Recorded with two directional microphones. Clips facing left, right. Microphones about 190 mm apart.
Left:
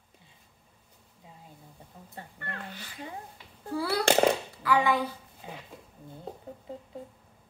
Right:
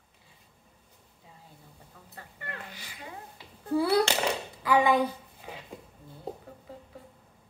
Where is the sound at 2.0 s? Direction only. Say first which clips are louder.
Left 5 dB; 25° left (ahead or behind).